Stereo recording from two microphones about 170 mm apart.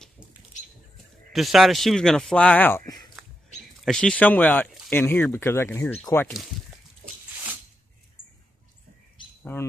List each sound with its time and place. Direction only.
1.3 s speech: centre (ahead or behind)
9.4 s bird: 10° left (ahead or behind)